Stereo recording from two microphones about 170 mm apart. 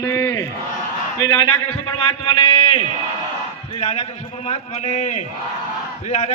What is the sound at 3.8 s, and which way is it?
A man's voice, 35° left (ahead or behind).